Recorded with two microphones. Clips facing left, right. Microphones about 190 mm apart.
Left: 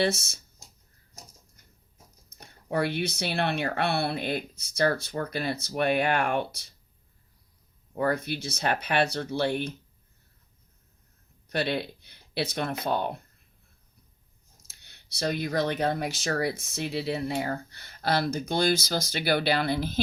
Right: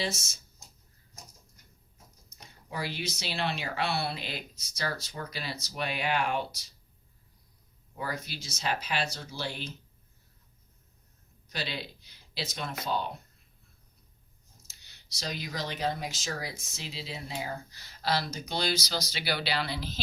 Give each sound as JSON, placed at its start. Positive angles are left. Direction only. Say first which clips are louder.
{"t": 0.0, "sound": "speech", "louder": "left 8 dB", "side_deg": 60}
{"t": 2.3, "sound": "speech", "louder": "left 10 dB", "side_deg": 60}
{"t": 7.9, "sound": "speech", "louder": "left 10 dB", "side_deg": 55}
{"t": 11.4, "sound": "speech", "louder": "left 9 dB", "side_deg": 60}
{"t": 14.7, "sound": "speech", "louder": "left 1 dB", "side_deg": 60}